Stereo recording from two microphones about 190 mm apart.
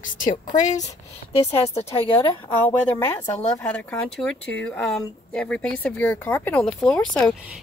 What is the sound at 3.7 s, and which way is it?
A woman's voice, 5° left (ahead or behind).